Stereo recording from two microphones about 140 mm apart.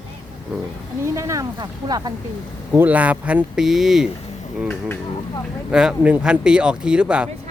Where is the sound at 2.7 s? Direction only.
10° right (ahead or behind).